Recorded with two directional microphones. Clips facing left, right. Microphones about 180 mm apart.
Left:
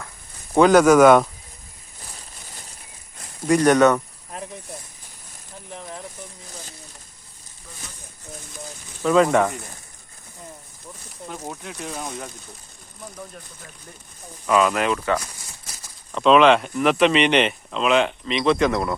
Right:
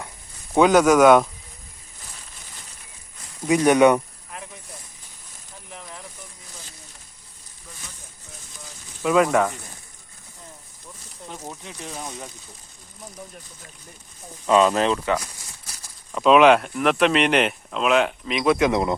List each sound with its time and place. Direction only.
0.5 s speech: centre (ahead or behind)
3.4 s speech: 5° right (ahead or behind)
9.0 s speech: 5° right (ahead or behind)
11.3 s speech: 5° left (ahead or behind)
14.4 s speech: 25° right (ahead or behind)
14.9 s speech: 15° right (ahead or behind)
16.1 s speech: 5° right (ahead or behind)